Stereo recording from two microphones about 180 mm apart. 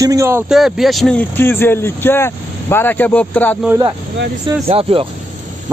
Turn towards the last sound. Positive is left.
turn(degrees=-30)  # may be behind; listen again after turning